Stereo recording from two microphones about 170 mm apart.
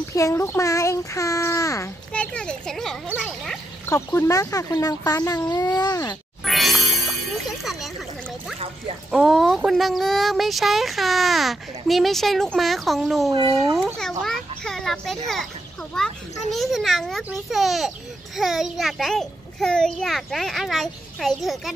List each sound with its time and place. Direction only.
0.1 s a child's voice: 15° left (ahead or behind)
2.1 s a child's voice: 5° left (ahead or behind)
3.9 s speech: 15° left (ahead or behind)
6.4 s music: centre (ahead or behind)
9.1 s a child's voice: centre (ahead or behind)